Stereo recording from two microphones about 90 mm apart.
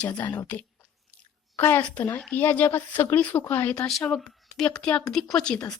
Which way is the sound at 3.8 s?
5° left (ahead or behind).